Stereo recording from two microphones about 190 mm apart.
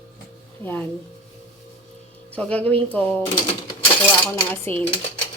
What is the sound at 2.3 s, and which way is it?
Speech, 5° left (ahead or behind).